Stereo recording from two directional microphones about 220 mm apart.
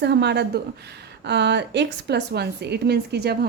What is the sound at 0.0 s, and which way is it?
Speech, 50° right (ahead or behind).